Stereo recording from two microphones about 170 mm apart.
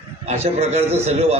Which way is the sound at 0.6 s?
35° right (ahead or behind).